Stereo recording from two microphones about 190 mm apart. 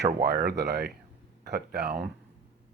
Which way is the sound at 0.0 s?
55° right (ahead or behind).